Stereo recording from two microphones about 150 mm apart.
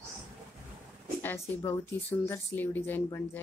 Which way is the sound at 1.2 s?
15° left (ahead or behind).